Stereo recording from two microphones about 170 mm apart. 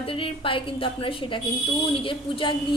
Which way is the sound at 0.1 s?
30° left (ahead or behind).